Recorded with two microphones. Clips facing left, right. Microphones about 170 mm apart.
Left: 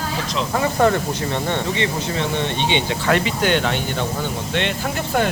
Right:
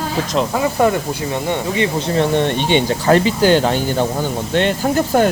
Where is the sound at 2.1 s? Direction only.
45° right (ahead or behind).